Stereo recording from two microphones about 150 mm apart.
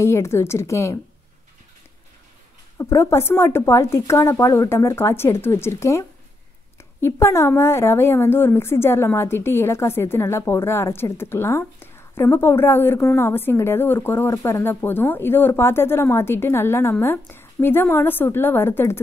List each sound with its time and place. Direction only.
0.0 s a woman's voice: 20° left (ahead or behind)
2.8 s a woman's voice: 20° left (ahead or behind)